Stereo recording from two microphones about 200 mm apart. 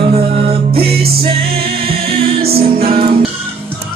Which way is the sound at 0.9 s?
50° right (ahead or behind).